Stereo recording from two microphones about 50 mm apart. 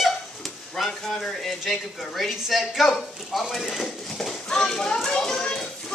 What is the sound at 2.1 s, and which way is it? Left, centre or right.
Speech, centre.